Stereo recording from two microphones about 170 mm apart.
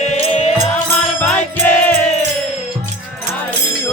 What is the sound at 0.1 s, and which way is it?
Music, 40° left (ahead or behind).